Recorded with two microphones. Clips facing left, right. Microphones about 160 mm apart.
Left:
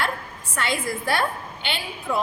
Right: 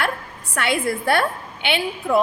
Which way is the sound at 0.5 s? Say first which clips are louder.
Right 4 dB; 60° right (ahead or behind).